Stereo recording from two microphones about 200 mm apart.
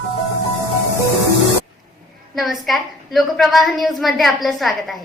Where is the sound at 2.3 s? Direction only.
Centre (ahead or behind).